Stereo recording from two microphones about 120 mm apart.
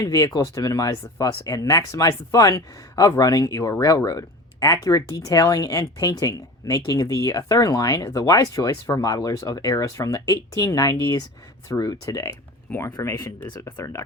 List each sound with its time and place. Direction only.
0.0 s speech: 30° left (ahead or behind)